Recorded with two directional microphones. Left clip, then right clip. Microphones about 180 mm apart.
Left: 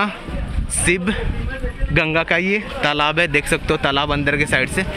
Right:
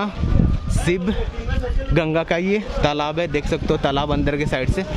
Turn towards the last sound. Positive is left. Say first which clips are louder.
# left 5 dB
turn(degrees=-10)  # may be behind; listen again after turning